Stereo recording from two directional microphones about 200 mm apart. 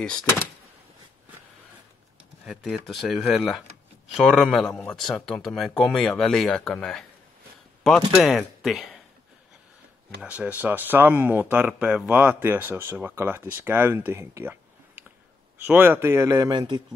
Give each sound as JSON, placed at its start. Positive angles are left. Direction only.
{"t": 0.0, "sound": "a man's voice", "side_deg": 5}
{"t": 2.4, "sound": "a man's voice", "side_deg": 0}
{"t": 10.2, "sound": "speech", "side_deg": -5}